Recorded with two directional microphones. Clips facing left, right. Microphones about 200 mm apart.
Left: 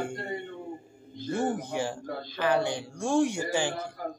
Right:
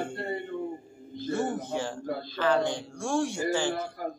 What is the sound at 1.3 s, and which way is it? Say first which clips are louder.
A man's voice: even; 15° left (ahead or behind).